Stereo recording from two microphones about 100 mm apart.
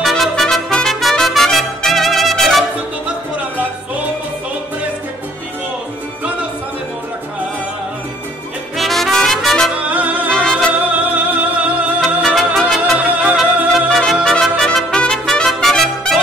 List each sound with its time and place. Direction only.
0.0 s music: 5° left (ahead or behind)
8.7 s brass instrument: centre (ahead or behind)
9.8 s music: 15° right (ahead or behind)
10.3 s music: 10° left (ahead or behind)
10.9 s music: 15° right (ahead or behind)
12.0 s music: centre (ahead or behind)